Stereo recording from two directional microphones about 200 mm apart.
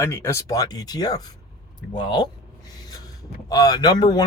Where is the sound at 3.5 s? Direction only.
20° left (ahead or behind).